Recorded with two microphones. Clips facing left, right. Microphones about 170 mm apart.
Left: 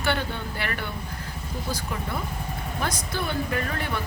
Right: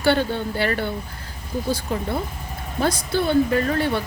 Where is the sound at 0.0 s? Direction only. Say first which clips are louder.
Right 8 dB; 30° right (ahead or behind).